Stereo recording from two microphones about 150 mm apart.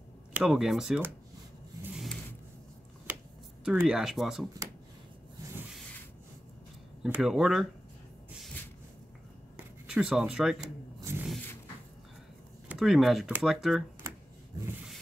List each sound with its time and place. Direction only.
0.3 s speech: 5° right (ahead or behind)
3.6 s speech: 5° right (ahead or behind)
7.0 s speech: 5° right (ahead or behind)
9.8 s speech: 5° right (ahead or behind)
10.6 s rub: 25° right (ahead or behind)
12.6 s speech: centre (ahead or behind)